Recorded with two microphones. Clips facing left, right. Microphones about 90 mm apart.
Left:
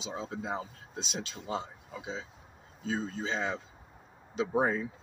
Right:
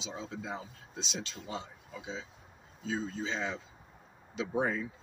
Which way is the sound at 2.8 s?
45° left (ahead or behind).